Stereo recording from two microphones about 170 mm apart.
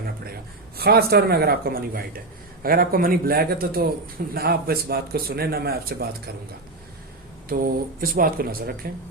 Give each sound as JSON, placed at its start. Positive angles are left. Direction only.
{"t": 0.8, "sound": "a man's voice", "side_deg": -65}
{"t": 7.5, "sound": "a man's voice", "side_deg": -55}